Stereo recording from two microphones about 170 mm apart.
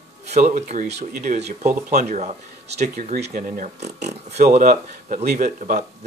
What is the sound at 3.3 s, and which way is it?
Speech, 50° right (ahead or behind).